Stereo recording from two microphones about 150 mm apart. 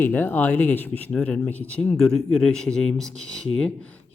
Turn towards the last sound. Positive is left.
turn(degrees=5)  # may be behind; listen again after turning